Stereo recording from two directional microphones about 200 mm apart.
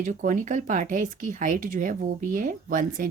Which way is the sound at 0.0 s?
40° right (ahead or behind).